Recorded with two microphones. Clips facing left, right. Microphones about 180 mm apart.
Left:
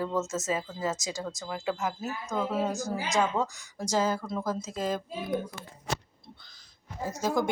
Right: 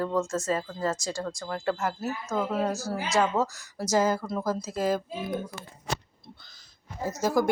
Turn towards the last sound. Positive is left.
turn(degrees=15)  # may be behind; listen again after turning